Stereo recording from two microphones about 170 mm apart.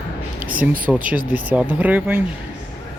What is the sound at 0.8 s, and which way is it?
Speech, 10° right (ahead or behind).